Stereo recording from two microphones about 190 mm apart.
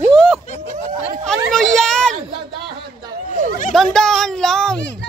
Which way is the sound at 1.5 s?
Centre (ahead or behind).